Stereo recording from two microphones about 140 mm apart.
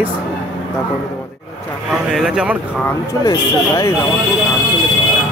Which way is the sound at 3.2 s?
20° left (ahead or behind).